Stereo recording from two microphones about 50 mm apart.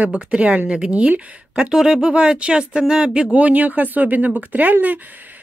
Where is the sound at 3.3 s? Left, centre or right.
Right.